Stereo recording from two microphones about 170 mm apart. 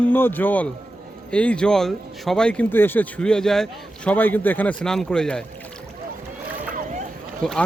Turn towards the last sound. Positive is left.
turn(degrees=5)  # may be behind; listen again after turning